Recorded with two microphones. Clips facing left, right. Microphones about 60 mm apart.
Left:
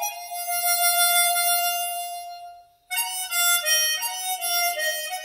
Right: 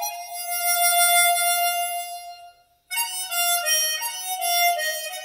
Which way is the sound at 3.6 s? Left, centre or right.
Right.